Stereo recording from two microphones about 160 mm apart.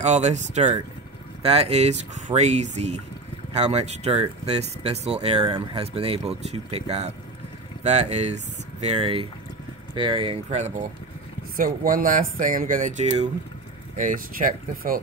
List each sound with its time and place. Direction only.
0.0 s speech: 45° right (ahead or behind)
11.5 s speech: 60° right (ahead or behind)